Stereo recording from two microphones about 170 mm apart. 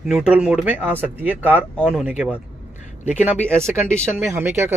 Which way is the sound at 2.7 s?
45° left (ahead or behind).